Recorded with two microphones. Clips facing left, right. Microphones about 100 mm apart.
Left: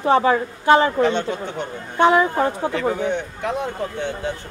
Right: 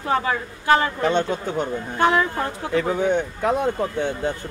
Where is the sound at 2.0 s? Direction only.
20° left (ahead or behind).